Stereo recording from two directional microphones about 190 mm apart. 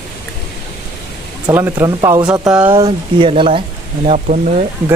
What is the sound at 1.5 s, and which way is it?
Speech, 10° right (ahead or behind).